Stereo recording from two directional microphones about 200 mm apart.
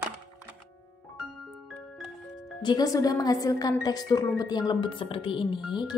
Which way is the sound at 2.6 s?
20° left (ahead or behind).